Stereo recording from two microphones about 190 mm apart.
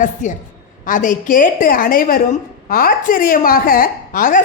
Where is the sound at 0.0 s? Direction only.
40° left (ahead or behind).